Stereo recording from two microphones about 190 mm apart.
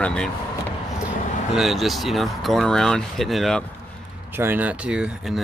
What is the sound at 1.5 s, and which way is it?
Speech, centre (ahead or behind).